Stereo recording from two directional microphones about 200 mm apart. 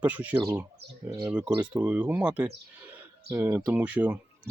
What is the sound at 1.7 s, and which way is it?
Speech, 5° right (ahead or behind).